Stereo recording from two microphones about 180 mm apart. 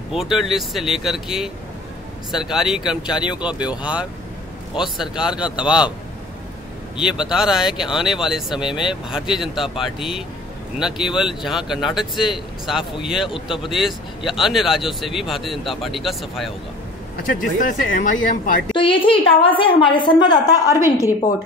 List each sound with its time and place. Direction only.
0.1 s speech: centre (ahead or behind)
7.0 s speech: 5° right (ahead or behind)
17.6 s speech: 45° left (ahead or behind)
18.7 s a woman's voice: 30° left (ahead or behind)